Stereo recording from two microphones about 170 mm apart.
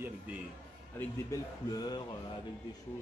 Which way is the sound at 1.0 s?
20° left (ahead or behind).